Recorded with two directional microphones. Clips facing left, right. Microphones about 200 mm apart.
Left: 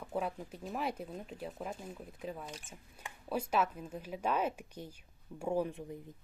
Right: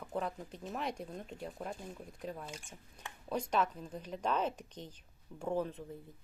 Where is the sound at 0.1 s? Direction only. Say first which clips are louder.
Left 1 dB; 5° left (ahead or behind).